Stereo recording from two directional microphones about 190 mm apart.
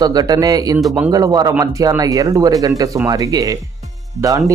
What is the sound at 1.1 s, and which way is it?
Speech, 20° right (ahead or behind).